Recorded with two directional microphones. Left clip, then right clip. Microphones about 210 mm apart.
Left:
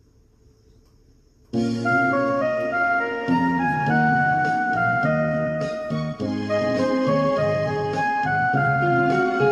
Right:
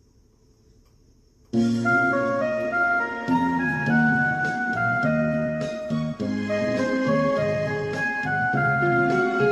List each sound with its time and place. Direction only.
1.5 s music: 45° right (ahead or behind)